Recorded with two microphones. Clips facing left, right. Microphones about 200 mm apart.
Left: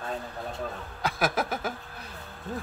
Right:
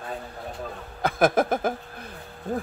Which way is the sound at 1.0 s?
50° right (ahead or behind).